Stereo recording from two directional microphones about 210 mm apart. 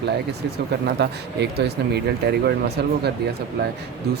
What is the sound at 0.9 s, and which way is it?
Speech, 50° right (ahead or behind).